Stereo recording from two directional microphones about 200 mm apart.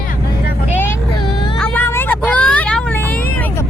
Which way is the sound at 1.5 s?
10° left (ahead or behind).